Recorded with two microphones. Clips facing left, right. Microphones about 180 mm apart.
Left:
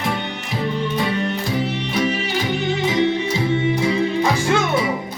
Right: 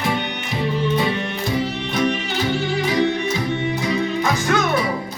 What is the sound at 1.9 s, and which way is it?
Music, 5° left (ahead or behind).